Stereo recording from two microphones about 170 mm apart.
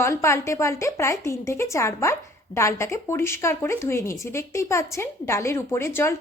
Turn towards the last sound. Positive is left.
turn(degrees=15)  # may be behind; listen again after turning